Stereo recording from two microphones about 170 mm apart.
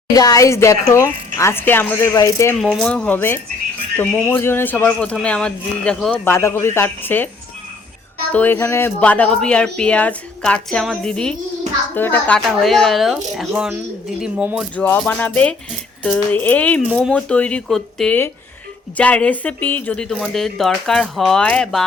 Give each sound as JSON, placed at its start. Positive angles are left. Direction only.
{"t": 0.1, "sound": "speech", "side_deg": 20}
{"t": 2.6, "sound": "speech", "side_deg": 0}
{"t": 6.3, "sound": "speech", "side_deg": 15}
{"t": 8.3, "sound": "speech", "side_deg": 10}
{"t": 14.8, "sound": "speech", "side_deg": 10}